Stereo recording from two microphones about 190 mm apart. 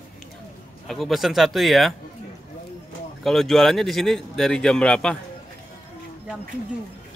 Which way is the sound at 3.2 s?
Centre (ahead or behind).